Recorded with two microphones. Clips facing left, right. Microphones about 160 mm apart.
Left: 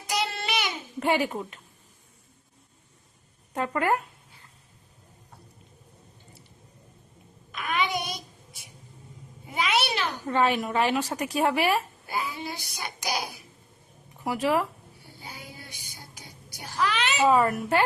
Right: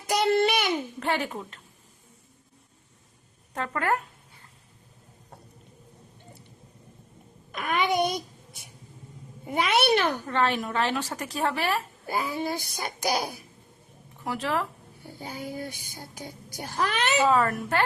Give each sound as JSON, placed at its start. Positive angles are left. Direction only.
{"t": 0.1, "sound": "child singing", "side_deg": -50}
{"t": 0.9, "sound": "a woman's voice", "side_deg": 10}
{"t": 3.5, "sound": "a woman's voice", "side_deg": 10}
{"t": 7.5, "sound": "babbling", "side_deg": -50}
{"t": 9.5, "sound": "a sound", "side_deg": -55}
{"t": 10.2, "sound": "a woman's voice", "side_deg": 10}
{"t": 12.0, "sound": "speech", "side_deg": -45}
{"t": 13.1, "sound": "a child's voice", "side_deg": -35}
{"t": 14.3, "sound": "a woman's voice", "side_deg": 10}
{"t": 15.0, "sound": "speech", "side_deg": -45}
{"t": 17.2, "sound": "a woman's voice", "side_deg": 10}